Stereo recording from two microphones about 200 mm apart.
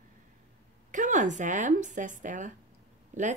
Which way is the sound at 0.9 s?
40° right (ahead or behind).